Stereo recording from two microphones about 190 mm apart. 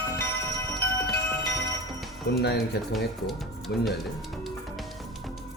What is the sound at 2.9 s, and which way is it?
Speech, centre (ahead or behind).